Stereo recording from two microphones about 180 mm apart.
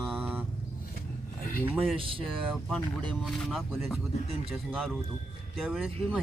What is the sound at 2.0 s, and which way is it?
Speech, 30° right (ahead or behind).